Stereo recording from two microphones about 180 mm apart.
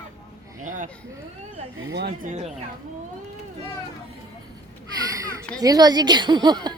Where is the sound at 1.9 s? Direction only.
65° right (ahead or behind).